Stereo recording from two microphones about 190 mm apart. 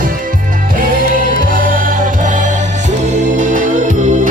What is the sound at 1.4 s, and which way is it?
Music, 45° right (ahead or behind).